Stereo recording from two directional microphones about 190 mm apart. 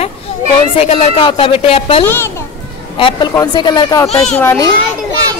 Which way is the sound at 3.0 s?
20° left (ahead or behind).